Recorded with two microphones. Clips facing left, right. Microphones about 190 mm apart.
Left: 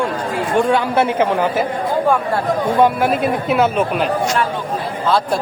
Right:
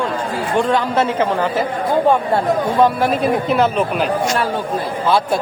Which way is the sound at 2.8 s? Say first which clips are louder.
Left 1 dB; 5° left (ahead or behind).